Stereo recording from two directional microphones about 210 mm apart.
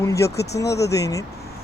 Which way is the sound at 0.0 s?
15° left (ahead or behind).